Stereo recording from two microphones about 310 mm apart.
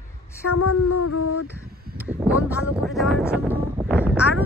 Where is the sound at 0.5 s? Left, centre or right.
Left.